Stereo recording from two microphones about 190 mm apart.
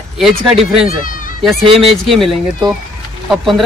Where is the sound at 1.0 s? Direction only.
45° left (ahead or behind).